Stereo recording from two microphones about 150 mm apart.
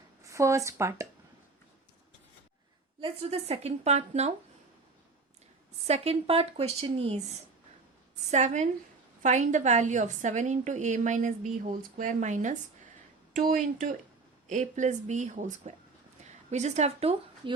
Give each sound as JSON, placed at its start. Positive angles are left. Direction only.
{"t": 0.3, "sound": "speech", "side_deg": -20}
{"t": 3.0, "sound": "a woman's voice", "side_deg": -45}
{"t": 5.9, "sound": "a woman's voice", "side_deg": -40}
{"t": 8.3, "sound": "a woman's voice", "side_deg": -55}
{"t": 13.3, "sound": "a woman's voice", "side_deg": -65}